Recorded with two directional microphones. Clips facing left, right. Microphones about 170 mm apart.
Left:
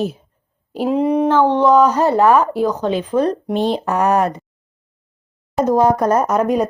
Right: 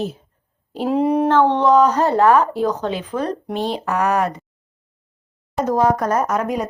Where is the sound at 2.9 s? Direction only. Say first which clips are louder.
Left 6 dB; 25° left (ahead or behind).